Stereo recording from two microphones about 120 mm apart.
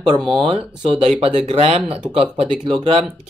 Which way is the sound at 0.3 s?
50° right (ahead or behind).